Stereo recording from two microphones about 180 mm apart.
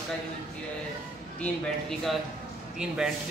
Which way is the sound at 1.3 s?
5° left (ahead or behind).